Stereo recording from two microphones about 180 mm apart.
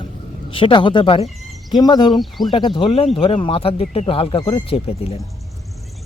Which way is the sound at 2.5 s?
25° left (ahead or behind).